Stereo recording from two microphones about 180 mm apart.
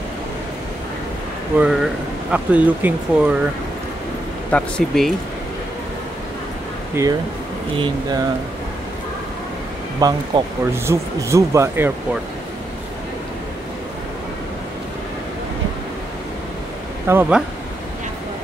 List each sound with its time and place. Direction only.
1.6 s speech: centre (ahead or behind)
4.5 s speech: 5° left (ahead or behind)
7.0 s speech: 15° right (ahead or behind)
7.7 s speech: 25° right (ahead or behind)
9.9 s speech: 20° right (ahead or behind)
17.1 s speech: 10° right (ahead or behind)